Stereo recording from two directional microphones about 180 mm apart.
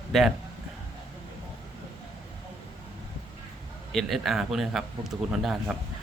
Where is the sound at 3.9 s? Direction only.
Centre (ahead or behind).